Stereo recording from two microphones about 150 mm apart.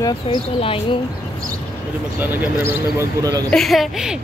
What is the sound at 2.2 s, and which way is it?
Speech, 10° right (ahead or behind).